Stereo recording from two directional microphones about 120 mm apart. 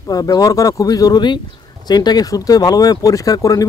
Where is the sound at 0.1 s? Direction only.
30° left (ahead or behind).